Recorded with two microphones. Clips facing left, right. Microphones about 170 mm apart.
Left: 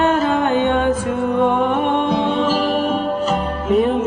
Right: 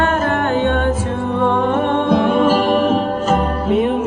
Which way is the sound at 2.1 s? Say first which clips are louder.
Right 4 dB; 55° right (ahead or behind).